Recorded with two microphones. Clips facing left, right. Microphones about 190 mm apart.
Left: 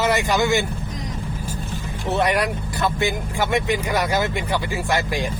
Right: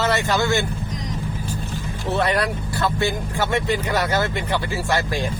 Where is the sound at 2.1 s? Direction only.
20° left (ahead or behind).